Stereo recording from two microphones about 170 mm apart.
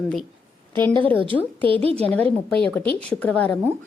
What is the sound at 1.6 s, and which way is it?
Speech, 35° right (ahead or behind).